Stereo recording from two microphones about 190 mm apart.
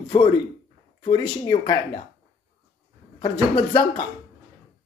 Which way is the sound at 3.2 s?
25° left (ahead or behind).